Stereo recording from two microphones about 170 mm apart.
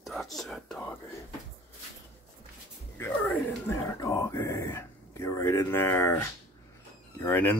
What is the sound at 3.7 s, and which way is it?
Speech, 20° left (ahead or behind).